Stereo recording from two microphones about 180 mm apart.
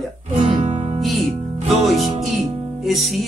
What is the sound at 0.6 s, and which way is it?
Music, 40° right (ahead or behind).